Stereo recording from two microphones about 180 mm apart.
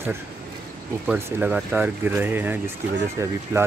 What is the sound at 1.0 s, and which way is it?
Speech, 10° right (ahead or behind).